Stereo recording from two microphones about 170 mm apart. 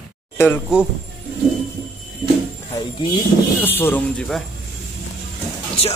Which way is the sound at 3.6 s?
10° left (ahead or behind).